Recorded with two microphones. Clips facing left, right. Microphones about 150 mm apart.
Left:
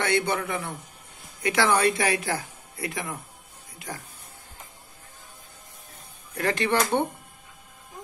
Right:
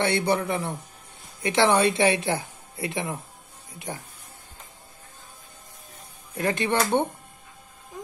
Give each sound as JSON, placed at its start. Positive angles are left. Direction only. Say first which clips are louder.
{"t": 0.0, "sound": "a man's voice", "louder": "right 2 dB", "side_deg": -30}
{"t": 6.3, "sound": "speech", "louder": "even", "side_deg": -20}